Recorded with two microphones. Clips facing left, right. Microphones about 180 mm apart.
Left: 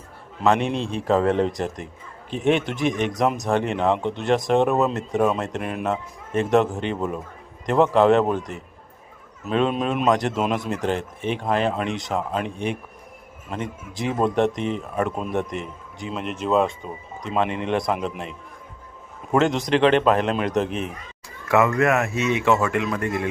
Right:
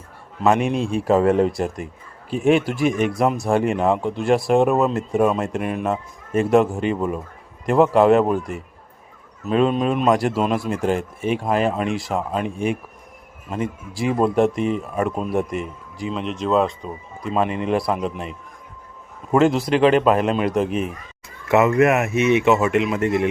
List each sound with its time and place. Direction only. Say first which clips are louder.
0.4 s a man's voice: right 2 dB; 10° right (ahead or behind)
19.3 s a man's voice: right 3 dB; 5° right (ahead or behind)
21.5 s a man's voice: right 3 dB; 20° right (ahead or behind)